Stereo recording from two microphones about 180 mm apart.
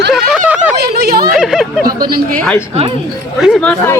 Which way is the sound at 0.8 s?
60° right (ahead or behind).